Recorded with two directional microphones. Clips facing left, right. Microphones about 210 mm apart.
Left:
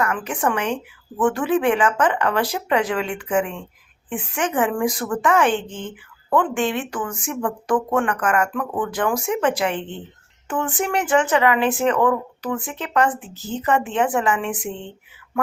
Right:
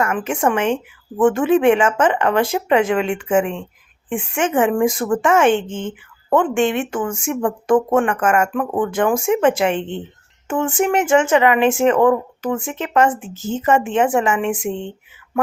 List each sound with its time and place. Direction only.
0.0 s speech: 25° right (ahead or behind)